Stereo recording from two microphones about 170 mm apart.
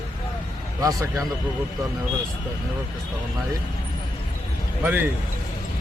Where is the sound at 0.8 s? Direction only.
20° right (ahead or behind).